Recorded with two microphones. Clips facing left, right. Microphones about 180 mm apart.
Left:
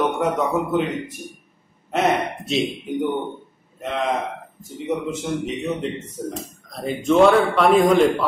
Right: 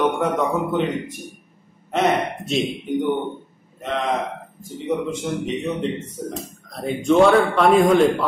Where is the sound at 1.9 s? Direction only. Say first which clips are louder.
Right 1 dB; centre (ahead or behind).